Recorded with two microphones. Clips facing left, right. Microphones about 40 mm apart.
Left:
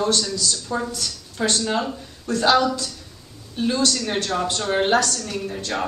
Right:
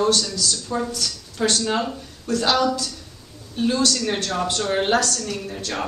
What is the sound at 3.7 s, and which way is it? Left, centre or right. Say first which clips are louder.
A man's voice: even; centre.